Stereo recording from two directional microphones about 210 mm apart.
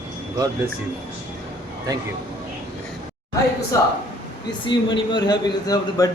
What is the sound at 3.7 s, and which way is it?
A man's voice, 15° left (ahead or behind).